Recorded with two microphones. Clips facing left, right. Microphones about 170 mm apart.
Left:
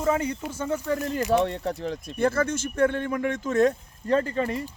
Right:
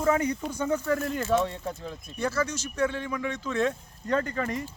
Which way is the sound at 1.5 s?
65° left (ahead or behind).